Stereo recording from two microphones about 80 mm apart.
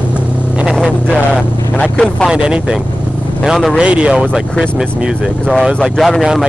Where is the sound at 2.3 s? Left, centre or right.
Centre.